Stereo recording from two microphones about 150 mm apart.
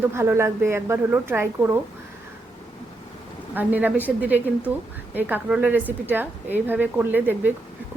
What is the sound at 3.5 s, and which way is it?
Speech, 10° right (ahead or behind).